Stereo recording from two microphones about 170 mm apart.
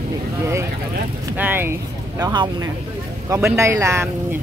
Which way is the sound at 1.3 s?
10° right (ahead or behind).